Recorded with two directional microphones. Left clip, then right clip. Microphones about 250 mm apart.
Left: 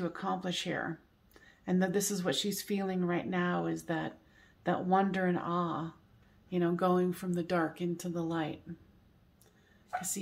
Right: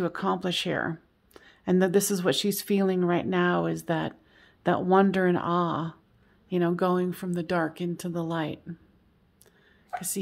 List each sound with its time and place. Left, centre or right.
0.0 s speech: right